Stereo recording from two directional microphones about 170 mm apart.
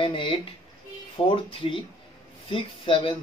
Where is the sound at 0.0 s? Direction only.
30° left (ahead or behind).